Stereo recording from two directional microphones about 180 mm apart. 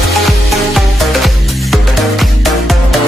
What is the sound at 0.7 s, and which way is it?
Music, centre (ahead or behind).